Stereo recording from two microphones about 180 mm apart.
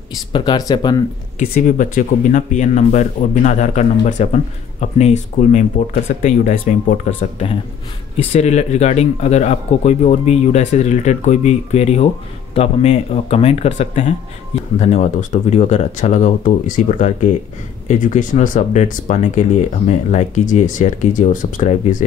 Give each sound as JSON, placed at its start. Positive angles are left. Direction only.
{"t": 0.3, "sound": "speech", "side_deg": 25}
{"t": 1.5, "sound": "speech", "side_deg": 45}